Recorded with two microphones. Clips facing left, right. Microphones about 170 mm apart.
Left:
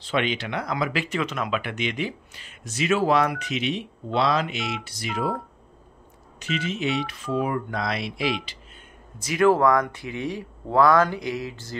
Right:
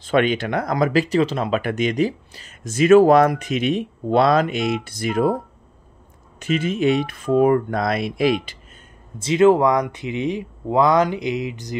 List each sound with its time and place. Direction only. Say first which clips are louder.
0.0 s speech: right 7 dB; 50° right (ahead or behind); by 1.6 s 30° right (ahead or behind)
1.6 s speech: right 8 dB; 45° right (ahead or behind)
6.4 s speech: right 8 dB; 50° right (ahead or behind)
9.2 s speech: right 4 dB; 25° right (ahead or behind)